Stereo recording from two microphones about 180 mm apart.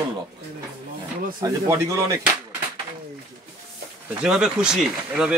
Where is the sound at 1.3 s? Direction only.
20° right (ahead or behind).